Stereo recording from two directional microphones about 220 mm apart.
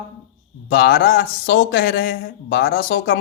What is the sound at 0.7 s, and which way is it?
A man's voice, 45° left (ahead or behind).